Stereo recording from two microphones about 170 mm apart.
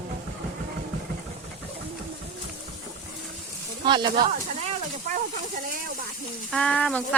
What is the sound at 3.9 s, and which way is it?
Speech, 25° right (ahead or behind).